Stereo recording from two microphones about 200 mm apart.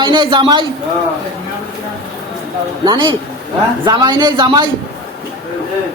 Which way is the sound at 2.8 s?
20° right (ahead or behind).